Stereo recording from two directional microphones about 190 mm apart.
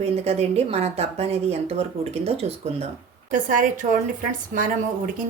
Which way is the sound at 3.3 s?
45° right (ahead or behind).